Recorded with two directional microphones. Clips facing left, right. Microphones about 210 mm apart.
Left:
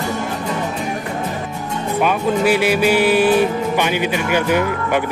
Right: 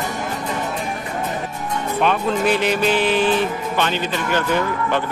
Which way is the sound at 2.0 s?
10° left (ahead or behind).